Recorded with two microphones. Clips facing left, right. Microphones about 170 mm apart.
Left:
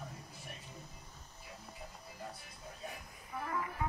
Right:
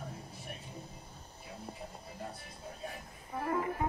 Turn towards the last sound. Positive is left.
turn(degrees=-35)  # may be behind; listen again after turning